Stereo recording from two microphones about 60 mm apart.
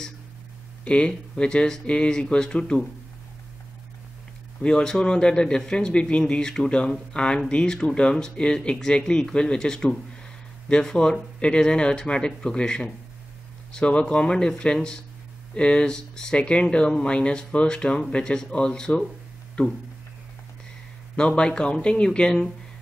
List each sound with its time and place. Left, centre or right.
0.8 s speech: centre
4.6 s speech: centre
21.2 s speech: centre